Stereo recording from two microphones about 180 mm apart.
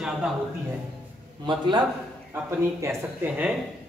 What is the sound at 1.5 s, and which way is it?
Speech, 25° right (ahead or behind).